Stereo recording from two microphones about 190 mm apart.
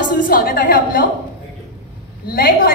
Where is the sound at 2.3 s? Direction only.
50° left (ahead or behind).